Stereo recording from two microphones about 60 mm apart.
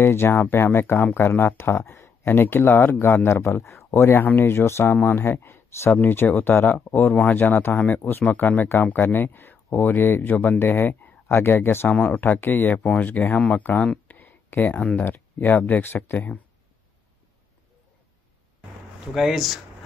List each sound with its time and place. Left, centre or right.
0.0 s speech: left
3.4 s speech: left
11.9 s speech: left
12.2 s speech: left
12.8 s speech: left
14.0 s a sound: left
15.0 s speech: left
19.1 s speech: centre